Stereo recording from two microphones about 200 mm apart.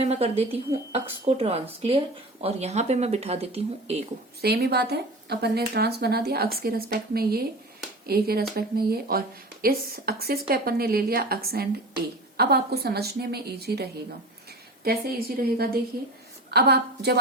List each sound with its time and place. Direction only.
0.0 s speech: 30° right (ahead or behind)
4.4 s speech: 55° right (ahead or behind)
15.4 s a woman's voice: 50° right (ahead or behind)